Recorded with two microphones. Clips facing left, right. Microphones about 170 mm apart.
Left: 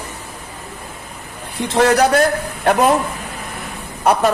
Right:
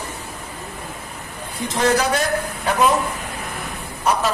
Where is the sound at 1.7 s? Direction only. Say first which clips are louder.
Left 5 dB; 65° left (ahead or behind).